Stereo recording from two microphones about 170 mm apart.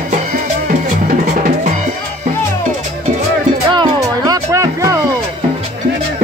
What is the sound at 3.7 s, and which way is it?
Music, 25° right (ahead or behind).